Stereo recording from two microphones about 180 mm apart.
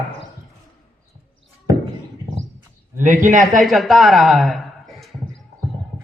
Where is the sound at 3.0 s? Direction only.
45° right (ahead or behind).